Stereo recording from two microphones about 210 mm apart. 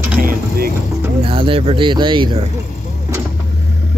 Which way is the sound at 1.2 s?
25° right (ahead or behind).